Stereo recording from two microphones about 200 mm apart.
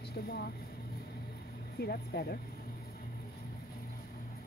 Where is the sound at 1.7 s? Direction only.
50° left (ahead or behind).